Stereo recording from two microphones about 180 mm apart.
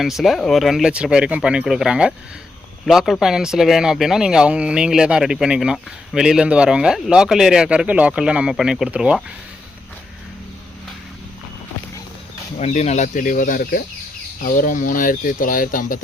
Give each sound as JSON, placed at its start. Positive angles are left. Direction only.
{"t": 0.0, "sound": "speech", "side_deg": 0}
{"t": 12.5, "sound": "speech", "side_deg": 40}